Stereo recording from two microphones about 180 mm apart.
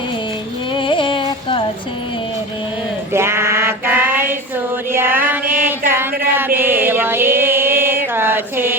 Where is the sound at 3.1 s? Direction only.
15° right (ahead or behind).